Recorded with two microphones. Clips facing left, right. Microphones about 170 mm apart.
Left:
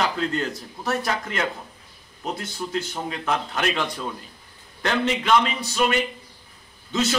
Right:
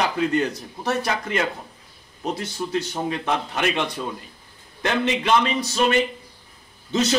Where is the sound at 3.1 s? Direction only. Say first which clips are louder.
Right 2 dB; 20° right (ahead or behind).